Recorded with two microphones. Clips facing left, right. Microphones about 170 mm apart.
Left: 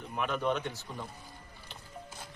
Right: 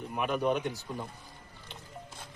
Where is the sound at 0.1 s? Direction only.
10° right (ahead or behind).